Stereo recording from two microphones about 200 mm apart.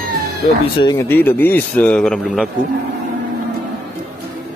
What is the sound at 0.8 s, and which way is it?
Speech, 10° left (ahead or behind).